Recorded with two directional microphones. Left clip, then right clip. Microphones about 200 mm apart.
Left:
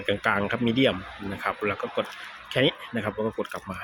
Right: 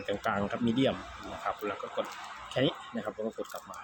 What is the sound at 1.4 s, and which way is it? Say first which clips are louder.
Speech: left 7 dB; 15° left (ahead or behind).